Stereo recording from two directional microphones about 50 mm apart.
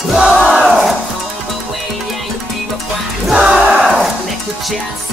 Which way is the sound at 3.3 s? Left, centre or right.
Centre.